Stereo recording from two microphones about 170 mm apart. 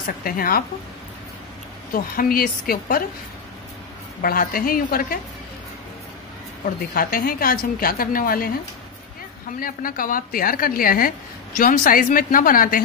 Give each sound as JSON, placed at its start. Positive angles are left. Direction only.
{"t": 0.0, "sound": "a woman's voice", "side_deg": 60}
{"t": 2.1, "sound": "a woman's voice", "side_deg": 60}
{"t": 4.2, "sound": "a woman's voice", "side_deg": 60}
{"t": 6.6, "sound": "a woman's voice", "side_deg": 55}
{"t": 9.6, "sound": "a woman's voice", "side_deg": 55}